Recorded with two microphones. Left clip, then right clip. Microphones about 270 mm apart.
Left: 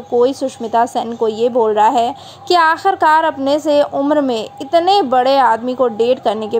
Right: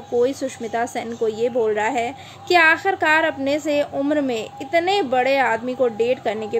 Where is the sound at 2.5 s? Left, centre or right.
Centre.